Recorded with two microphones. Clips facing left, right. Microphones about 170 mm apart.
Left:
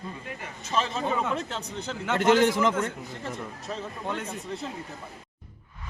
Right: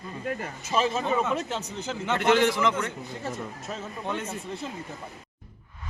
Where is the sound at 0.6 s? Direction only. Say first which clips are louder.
Right 2 dB; 10° right (ahead or behind).